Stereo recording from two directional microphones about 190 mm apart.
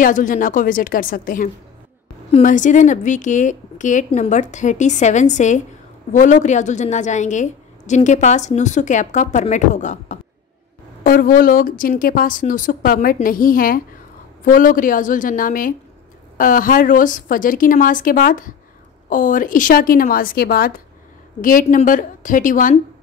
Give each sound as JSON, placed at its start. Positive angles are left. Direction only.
{"t": 0.0, "sound": "a woman's voice", "side_deg": 45}